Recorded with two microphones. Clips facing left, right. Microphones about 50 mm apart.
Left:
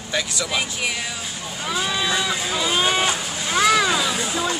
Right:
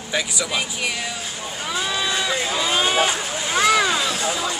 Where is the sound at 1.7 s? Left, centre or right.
Centre.